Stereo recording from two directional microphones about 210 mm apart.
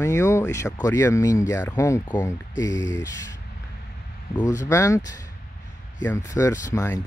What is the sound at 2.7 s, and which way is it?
Speech, 60° left (ahead or behind).